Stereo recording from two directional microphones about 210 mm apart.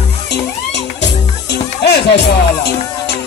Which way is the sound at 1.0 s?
55° left (ahead or behind).